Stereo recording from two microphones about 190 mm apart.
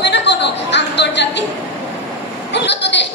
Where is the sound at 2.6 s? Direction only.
65° left (ahead or behind).